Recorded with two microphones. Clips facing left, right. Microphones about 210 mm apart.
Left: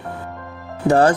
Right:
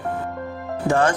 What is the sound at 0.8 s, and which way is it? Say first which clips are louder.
Speech: left 5 dB; 35° left (ahead or behind).